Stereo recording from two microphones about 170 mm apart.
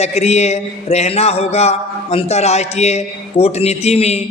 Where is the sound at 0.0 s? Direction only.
40° left (ahead or behind).